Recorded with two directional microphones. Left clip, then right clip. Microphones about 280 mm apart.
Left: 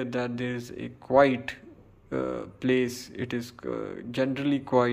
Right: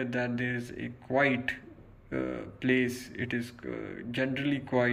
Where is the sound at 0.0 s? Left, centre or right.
Centre.